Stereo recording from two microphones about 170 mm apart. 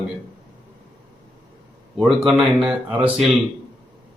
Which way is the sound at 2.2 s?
Centre (ahead or behind).